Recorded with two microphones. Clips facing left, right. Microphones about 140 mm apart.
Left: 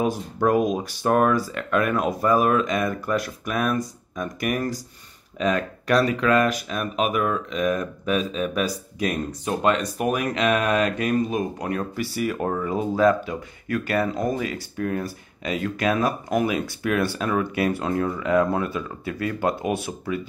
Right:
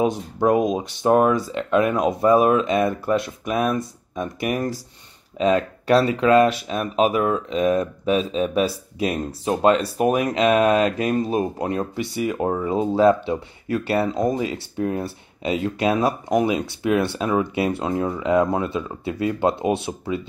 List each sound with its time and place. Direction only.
0.0 s speech: 20° right (ahead or behind)